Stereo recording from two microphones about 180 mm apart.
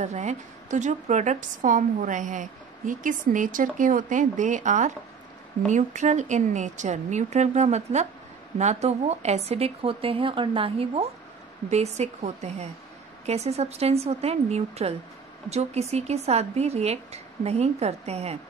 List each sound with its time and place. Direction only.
0.0 s a woman's voice: 40° right (ahead or behind)